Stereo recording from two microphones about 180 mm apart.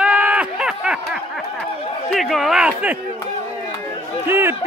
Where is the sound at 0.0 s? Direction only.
5° right (ahead or behind).